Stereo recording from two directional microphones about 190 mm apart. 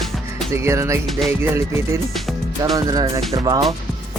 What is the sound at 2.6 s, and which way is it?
Speech, 20° right (ahead or behind).